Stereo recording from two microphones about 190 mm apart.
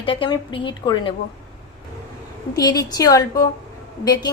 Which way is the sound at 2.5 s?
20° left (ahead or behind).